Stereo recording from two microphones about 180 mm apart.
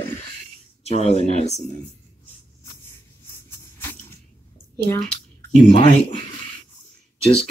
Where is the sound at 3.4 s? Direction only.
10° left (ahead or behind).